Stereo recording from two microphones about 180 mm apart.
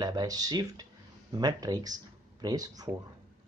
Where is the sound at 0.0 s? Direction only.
20° right (ahead or behind).